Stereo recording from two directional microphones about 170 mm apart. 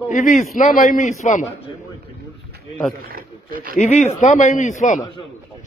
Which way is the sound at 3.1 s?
60° right (ahead or behind).